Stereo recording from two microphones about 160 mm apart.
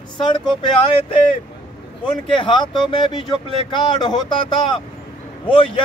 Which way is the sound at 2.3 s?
30° left (ahead or behind).